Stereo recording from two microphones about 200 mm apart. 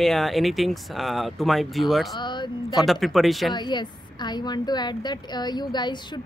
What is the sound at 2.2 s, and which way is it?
Speech, 25° left (ahead or behind).